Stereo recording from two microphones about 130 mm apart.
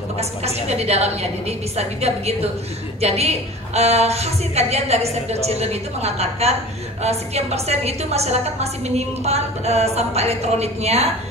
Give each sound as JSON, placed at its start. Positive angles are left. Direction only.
{"t": 0.2, "sound": "a woman's voice", "side_deg": -55}